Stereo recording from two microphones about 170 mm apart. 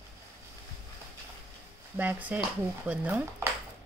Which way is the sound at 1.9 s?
10° right (ahead or behind).